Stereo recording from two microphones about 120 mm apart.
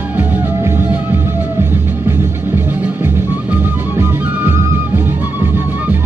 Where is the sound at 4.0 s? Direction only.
20° right (ahead or behind).